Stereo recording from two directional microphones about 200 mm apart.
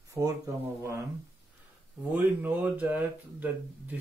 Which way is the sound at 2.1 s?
10° right (ahead or behind).